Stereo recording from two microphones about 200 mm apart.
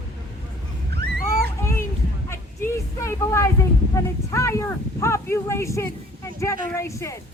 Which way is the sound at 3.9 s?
15° left (ahead or behind).